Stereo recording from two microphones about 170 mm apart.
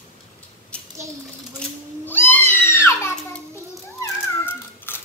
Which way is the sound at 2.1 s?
10° left (ahead or behind).